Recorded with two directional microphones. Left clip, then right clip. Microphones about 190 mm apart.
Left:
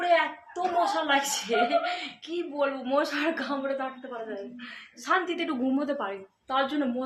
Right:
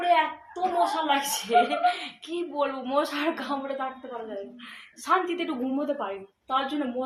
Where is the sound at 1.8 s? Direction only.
Centre (ahead or behind).